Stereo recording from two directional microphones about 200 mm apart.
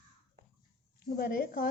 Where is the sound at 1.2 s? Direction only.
50° left (ahead or behind).